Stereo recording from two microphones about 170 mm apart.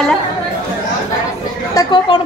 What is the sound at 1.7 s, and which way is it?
Speech, 25° left (ahead or behind).